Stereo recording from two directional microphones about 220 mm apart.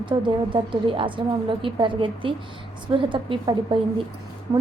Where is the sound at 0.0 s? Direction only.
20° right (ahead or behind).